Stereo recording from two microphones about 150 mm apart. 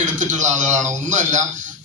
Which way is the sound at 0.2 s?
55° right (ahead or behind).